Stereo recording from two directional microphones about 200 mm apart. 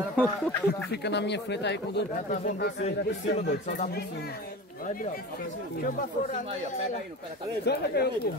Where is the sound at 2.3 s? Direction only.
40° left (ahead or behind).